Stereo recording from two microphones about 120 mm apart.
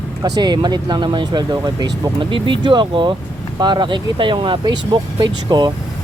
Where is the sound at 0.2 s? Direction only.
35° right (ahead or behind).